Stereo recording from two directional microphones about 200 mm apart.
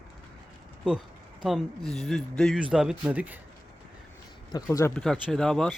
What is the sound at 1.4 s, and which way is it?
Speech, centre (ahead or behind).